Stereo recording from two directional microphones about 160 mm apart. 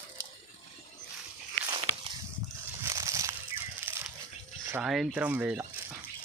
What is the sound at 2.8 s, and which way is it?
Crushing, 20° right (ahead or behind).